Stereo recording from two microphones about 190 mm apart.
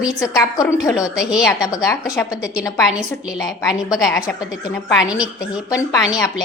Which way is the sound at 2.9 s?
5° right (ahead or behind).